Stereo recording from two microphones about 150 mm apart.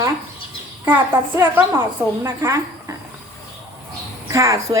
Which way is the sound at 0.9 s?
15° right (ahead or behind).